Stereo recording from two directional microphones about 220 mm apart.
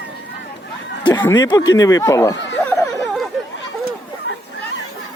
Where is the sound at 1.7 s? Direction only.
15° left (ahead or behind).